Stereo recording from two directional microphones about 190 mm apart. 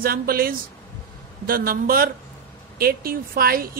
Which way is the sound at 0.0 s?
50° right (ahead or behind).